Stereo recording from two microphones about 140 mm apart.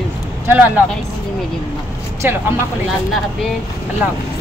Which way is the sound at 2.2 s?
15° right (ahead or behind).